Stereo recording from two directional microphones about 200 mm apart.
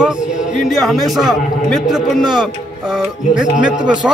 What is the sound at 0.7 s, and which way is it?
A man's voice, centre (ahead or behind).